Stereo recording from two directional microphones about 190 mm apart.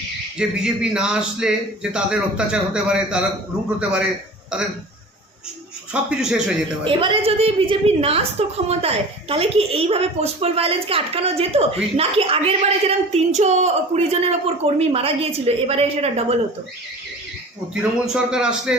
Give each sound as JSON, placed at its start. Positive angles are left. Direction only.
{"t": 0.3, "sound": "a man's voice", "side_deg": -5}
{"t": 5.9, "sound": "a man's voice", "side_deg": -5}
{"t": 6.8, "sound": "a woman's voice", "side_deg": -30}
{"t": 17.7, "sound": "a man's voice", "side_deg": -5}